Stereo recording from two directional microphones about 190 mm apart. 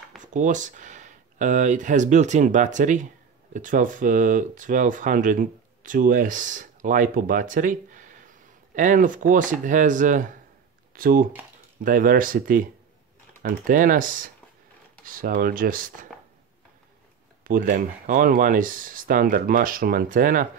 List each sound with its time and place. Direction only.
0.2 s speech: 40° right (ahead or behind)
13.7 s speech: 45° right (ahead or behind)
17.4 s speech: 45° right (ahead or behind)